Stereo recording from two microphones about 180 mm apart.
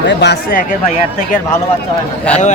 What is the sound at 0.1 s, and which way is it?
Speech, 70° left (ahead or behind).